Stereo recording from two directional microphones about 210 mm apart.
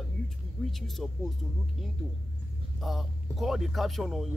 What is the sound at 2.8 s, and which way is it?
Speech, centre (ahead or behind).